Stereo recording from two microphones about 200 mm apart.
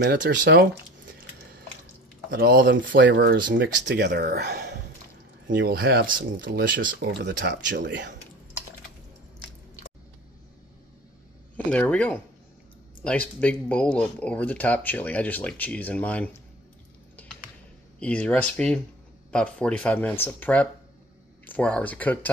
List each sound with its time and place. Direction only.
0.0 s speech: 60° right (ahead or behind)
2.3 s speech: 50° right (ahead or behind)
7.1 s speech: 60° right (ahead or behind)
11.5 s speech: 5° left (ahead or behind)
17.9 s speech: 5° left (ahead or behind)